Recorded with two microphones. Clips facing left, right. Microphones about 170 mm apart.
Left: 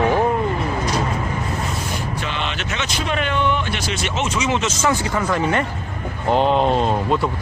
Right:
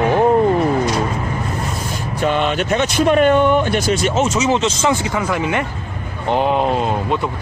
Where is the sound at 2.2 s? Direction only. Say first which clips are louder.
Right 9 dB; 50° right (ahead or behind); by 4.8 s 30° right (ahead or behind).